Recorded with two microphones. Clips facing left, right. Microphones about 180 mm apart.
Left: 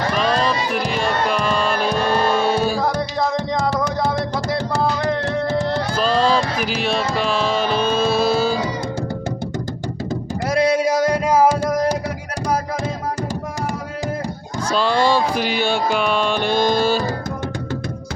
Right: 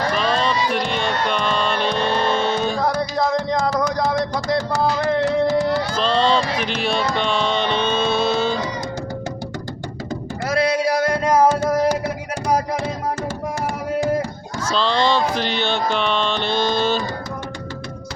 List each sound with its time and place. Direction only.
0.2 s music: 5° left (ahead or behind)
2.0 s vehicle: 45° left (ahead or behind)
2.3 s music: 10° left (ahead or behind)
6.0 s a sound: 5° left (ahead or behind)
7.1 s music: 5° left (ahead or behind)
10.5 s a sound: 20° left (ahead or behind)
14.7 s music: 10° left (ahead or behind)